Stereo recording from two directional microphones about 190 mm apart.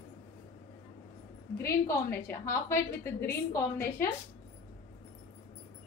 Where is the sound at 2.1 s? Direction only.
15° left (ahead or behind).